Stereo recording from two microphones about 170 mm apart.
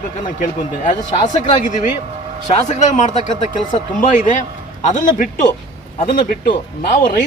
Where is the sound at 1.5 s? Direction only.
45° left (ahead or behind).